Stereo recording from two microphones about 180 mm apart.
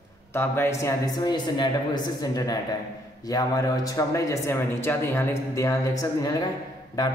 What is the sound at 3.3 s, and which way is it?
Speech, 20° left (ahead or behind).